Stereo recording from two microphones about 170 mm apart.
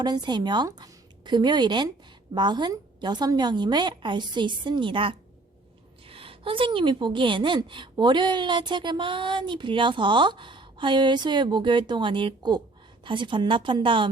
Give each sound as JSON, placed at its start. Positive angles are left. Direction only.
{"t": 0.0, "sound": "a woman's voice", "side_deg": -25}